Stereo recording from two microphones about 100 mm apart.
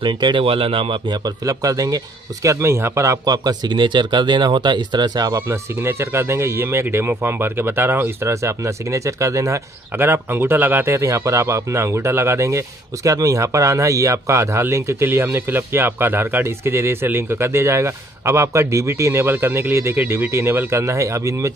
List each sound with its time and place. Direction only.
0.0 s a man's voice: 55° right (ahead or behind)
5.5 s speech: 25° right (ahead or behind)